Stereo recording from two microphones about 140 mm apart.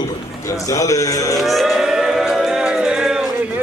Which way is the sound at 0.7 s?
25° left (ahead or behind).